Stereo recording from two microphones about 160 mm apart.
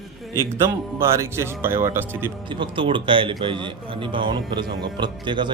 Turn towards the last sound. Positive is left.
turn(degrees=-30)  # may be behind; listen again after turning